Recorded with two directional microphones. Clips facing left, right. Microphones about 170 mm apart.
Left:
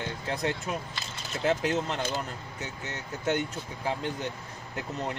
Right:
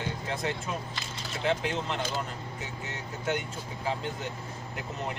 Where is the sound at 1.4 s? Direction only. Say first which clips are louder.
Left 3 dB; 40° left (ahead or behind).